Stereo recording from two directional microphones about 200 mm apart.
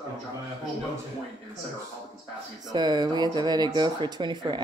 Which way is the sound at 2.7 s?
20° right (ahead or behind).